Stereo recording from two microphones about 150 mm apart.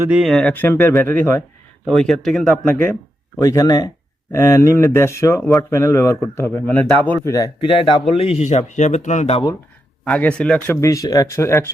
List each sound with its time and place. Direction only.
0.0 s speech: 5° right (ahead or behind); by 1.4 s 15° left (ahead or behind)
1.9 s speech: 5° left (ahead or behind)
3.3 s speech: 25° left (ahead or behind)
7.3 s speech: 30° left (ahead or behind); by 9.3 s 55° left (ahead or behind)
10.0 s speech: 10° left (ahead or behind)
10.8 s speech: 20° left (ahead or behind)